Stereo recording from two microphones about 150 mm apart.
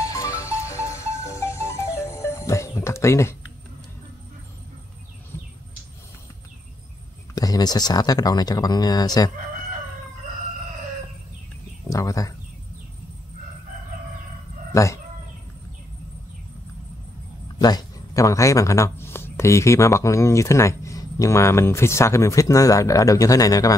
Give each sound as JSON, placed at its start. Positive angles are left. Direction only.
{"t": 0.0, "sound": "music", "side_deg": 20}
{"t": 7.3, "sound": "a man's voice", "side_deg": 25}
{"t": 11.9, "sound": "a sound", "side_deg": 20}
{"t": 14.7, "sound": "speech", "side_deg": 20}
{"t": 17.6, "sound": "a man's voice", "side_deg": 25}